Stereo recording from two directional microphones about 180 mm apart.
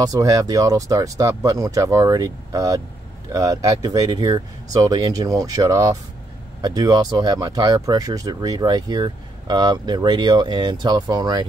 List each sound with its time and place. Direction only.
0.0 s speech: 20° right (ahead or behind)